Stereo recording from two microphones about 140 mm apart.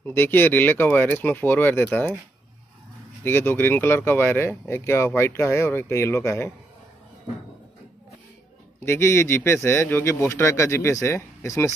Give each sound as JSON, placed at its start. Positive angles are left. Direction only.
{"t": 0.0, "sound": "speech", "side_deg": 15}
{"t": 3.3, "sound": "speech", "side_deg": 15}
{"t": 8.7, "sound": "a man's voice", "side_deg": 15}